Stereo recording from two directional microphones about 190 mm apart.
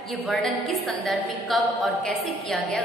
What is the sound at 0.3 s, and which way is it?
A woman's voice, centre (ahead or behind).